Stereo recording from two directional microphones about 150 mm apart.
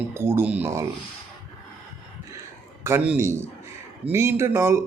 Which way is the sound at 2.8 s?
10° right (ahead or behind).